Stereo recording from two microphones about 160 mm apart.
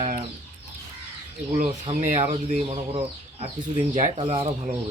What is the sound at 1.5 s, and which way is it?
Speech, 45° right (ahead or behind).